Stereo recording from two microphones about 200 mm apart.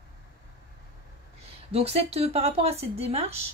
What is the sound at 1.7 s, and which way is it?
Speech, 30° right (ahead or behind).